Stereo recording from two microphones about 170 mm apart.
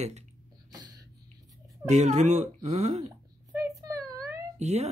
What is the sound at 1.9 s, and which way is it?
Speech, 40° right (ahead or behind).